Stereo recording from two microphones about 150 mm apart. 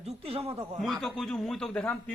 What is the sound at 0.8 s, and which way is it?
Speech, centre (ahead or behind).